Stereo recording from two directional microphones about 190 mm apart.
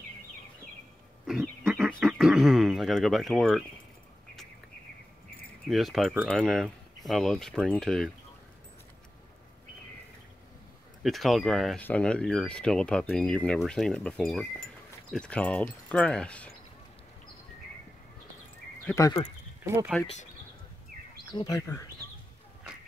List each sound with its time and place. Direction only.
1.2 s speech: centre (ahead or behind)
5.7 s speech: centre (ahead or behind)
11.0 s speech: centre (ahead or behind)
18.9 s speech: 15° left (ahead or behind)
19.6 s speech: 15° right (ahead or behind)
21.3 s speech: 20° left (ahead or behind)